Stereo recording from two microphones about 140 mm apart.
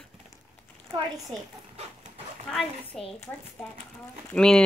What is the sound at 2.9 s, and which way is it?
Speech, centre (ahead or behind).